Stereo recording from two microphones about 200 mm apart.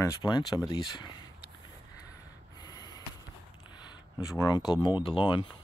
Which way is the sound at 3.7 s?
20° left (ahead or behind).